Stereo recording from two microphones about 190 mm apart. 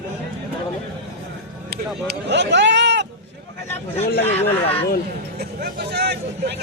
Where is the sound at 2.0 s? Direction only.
65° right (ahead or behind).